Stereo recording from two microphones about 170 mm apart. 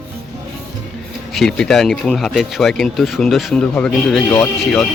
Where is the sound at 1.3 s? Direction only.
Centre (ahead or behind).